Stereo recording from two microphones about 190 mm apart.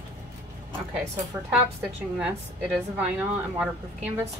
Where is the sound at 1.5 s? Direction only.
5° right (ahead or behind).